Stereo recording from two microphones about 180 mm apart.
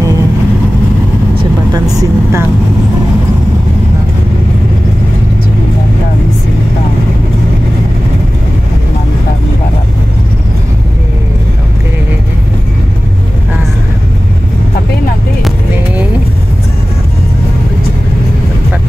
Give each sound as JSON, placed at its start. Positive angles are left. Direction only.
{"t": 1.4, "sound": "vehicle", "side_deg": -20}